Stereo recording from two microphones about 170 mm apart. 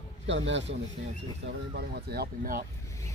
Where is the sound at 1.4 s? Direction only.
65° right (ahead or behind).